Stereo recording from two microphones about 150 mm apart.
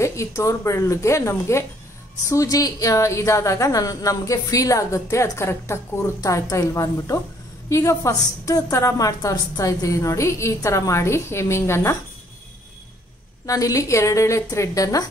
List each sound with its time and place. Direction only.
0.0 s a woman's voice: 20° left (ahead or behind)
13.5 s a woman's voice: 20° left (ahead or behind)